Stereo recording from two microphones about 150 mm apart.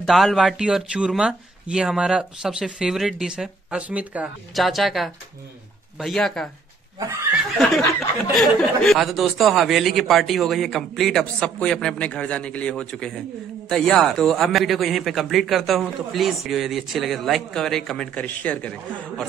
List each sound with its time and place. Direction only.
0.0 s a man's voice: centre (ahead or behind)
7.0 s speech: 20° right (ahead or behind)
8.3 s a man's voice: centre (ahead or behind)